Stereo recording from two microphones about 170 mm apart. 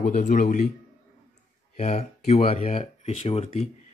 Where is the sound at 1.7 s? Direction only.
35° left (ahead or behind).